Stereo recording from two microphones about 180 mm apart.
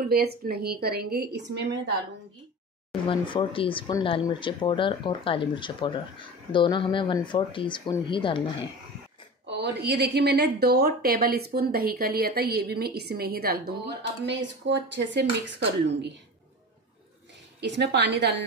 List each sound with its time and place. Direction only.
0.0 s a woman's voice: 60° right (ahead or behind)
3.1 s speech: 30° left (ahead or behind)
9.5 s a woman's voice: 70° right (ahead or behind)
14.2 s speech: 75° right (ahead or behind)
17.6 s speech: 70° right (ahead or behind)